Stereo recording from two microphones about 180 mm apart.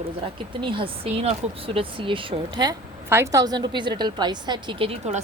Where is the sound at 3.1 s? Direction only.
15° right (ahead or behind).